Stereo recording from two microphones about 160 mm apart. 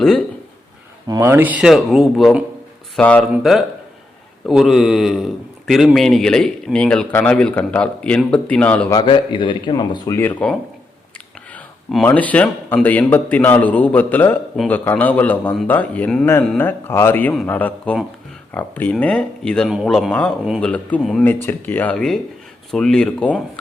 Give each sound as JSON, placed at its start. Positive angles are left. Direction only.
{"t": 1.0, "sound": "speech", "side_deg": -25}
{"t": 1.3, "sound": "speech", "side_deg": -10}
{"t": 8.9, "sound": "speech", "side_deg": 25}
{"t": 10.2, "sound": "a man's voice", "side_deg": 10}
{"t": 11.5, "sound": "a sound", "side_deg": 0}
{"t": 12.0, "sound": "a man's voice", "side_deg": 10}
{"t": 14.5, "sound": "a man's voice", "side_deg": 0}